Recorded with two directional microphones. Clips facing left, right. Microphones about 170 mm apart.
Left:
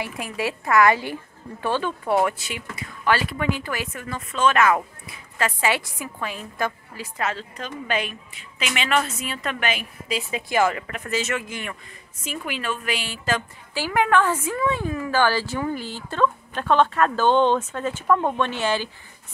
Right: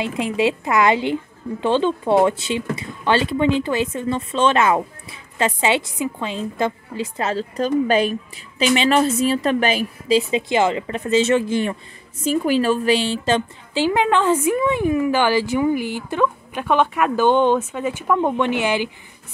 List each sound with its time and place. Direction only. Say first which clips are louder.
0.0 s a woman's voice: right 8 dB; 20° right (ahead or behind)